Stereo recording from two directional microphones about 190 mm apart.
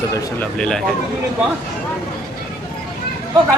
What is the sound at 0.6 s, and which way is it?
Speech, 5° left (ahead or behind).